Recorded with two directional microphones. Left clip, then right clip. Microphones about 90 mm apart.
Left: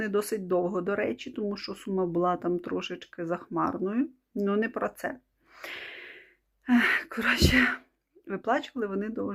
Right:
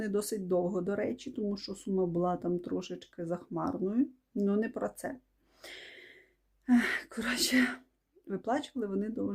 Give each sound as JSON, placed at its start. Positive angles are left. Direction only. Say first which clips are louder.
{"t": 0.0, "sound": "speech", "louder": "left 5 dB", "side_deg": -35}
{"t": 5.5, "sound": "wheeze", "louder": "left 8 dB", "side_deg": -30}
{"t": 6.7, "sound": "speech", "louder": "left 5 dB", "side_deg": -30}